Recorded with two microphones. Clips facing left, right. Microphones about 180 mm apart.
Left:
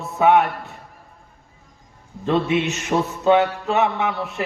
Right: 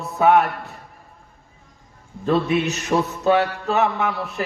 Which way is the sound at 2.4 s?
20° left (ahead or behind).